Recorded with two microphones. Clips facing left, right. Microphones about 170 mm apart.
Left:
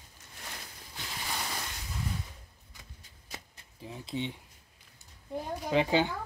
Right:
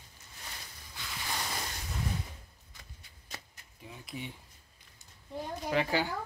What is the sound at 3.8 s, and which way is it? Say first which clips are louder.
Speech: left 7 dB; 30° left (ahead or behind).